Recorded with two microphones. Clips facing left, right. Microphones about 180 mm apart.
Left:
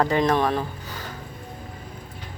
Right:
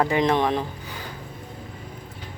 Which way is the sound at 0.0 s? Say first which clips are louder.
Even; 15° right (ahead or behind).